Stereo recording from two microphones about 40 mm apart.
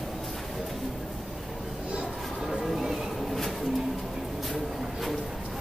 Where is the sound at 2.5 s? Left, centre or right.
Centre.